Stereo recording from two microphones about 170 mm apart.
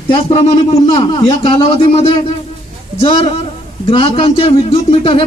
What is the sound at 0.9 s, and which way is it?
Speech, 30° left (ahead or behind).